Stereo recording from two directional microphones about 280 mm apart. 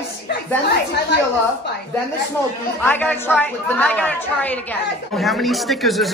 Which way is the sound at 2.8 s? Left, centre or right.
Centre.